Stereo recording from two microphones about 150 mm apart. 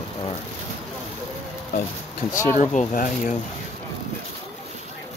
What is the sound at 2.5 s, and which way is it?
Speech, 60° left (ahead or behind).